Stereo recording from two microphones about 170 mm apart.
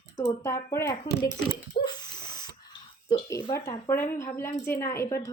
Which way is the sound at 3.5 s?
20° left (ahead or behind).